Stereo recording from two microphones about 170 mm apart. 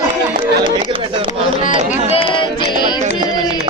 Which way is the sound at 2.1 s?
35° left (ahead or behind).